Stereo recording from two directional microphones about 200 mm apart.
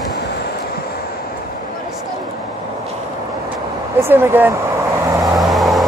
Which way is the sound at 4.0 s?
10° right (ahead or behind).